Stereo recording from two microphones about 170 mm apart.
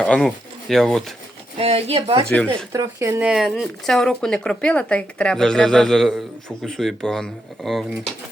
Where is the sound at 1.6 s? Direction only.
35° right (ahead or behind).